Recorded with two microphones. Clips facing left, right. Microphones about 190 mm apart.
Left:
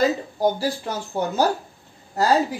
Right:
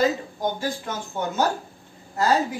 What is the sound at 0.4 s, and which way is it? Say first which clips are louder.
Speech: left 7 dB; 35° left (ahead or behind).